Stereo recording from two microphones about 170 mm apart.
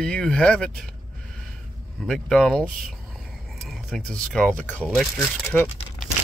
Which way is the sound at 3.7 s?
Centre (ahead or behind).